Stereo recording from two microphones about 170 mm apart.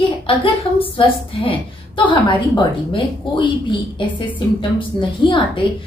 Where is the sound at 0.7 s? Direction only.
30° left (ahead or behind).